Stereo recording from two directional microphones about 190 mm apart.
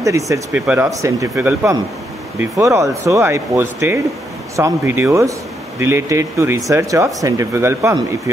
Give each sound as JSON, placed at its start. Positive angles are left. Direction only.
{"t": 0.0, "sound": "speech", "side_deg": -15}